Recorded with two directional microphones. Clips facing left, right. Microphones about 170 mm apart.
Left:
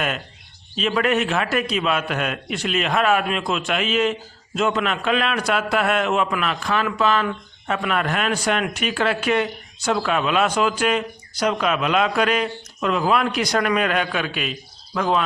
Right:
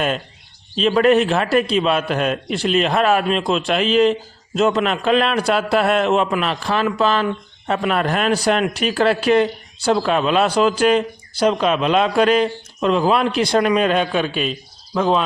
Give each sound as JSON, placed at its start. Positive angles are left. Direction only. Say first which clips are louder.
{"t": 0.8, "sound": "a man's voice", "louder": "right 6 dB", "side_deg": -35}